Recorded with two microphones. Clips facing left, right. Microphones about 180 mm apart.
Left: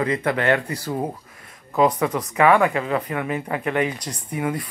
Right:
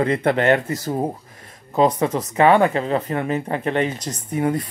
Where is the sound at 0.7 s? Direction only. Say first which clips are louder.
Right 3 dB; 45° right (ahead or behind).